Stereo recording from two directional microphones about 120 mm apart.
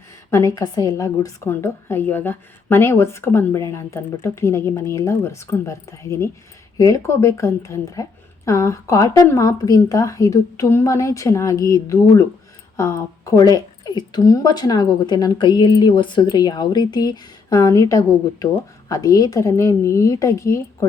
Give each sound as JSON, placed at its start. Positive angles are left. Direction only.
{"t": 0.3, "sound": "a woman's voice", "side_deg": 25}